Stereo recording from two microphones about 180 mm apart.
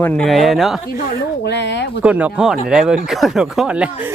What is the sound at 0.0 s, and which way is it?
Speech, 5° left (ahead or behind).